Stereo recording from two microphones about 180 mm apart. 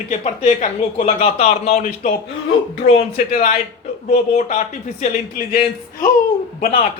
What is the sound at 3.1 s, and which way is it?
Speech, 50° left (ahead or behind).